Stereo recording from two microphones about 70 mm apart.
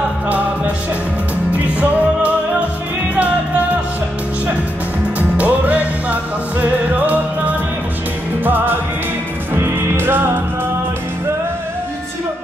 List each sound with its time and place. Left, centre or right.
5.4 s music: right